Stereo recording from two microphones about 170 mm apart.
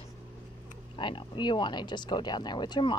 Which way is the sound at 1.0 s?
30° left (ahead or behind).